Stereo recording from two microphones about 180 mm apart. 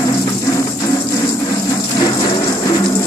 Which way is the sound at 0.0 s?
20° left (ahead or behind).